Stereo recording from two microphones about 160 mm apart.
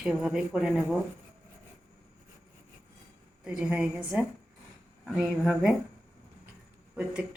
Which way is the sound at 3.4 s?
5° right (ahead or behind).